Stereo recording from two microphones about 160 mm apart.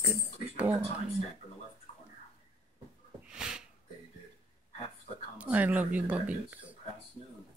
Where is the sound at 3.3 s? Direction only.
5° right (ahead or behind).